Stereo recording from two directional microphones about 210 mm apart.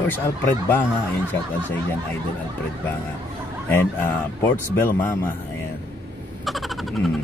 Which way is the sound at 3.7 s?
10° left (ahead or behind).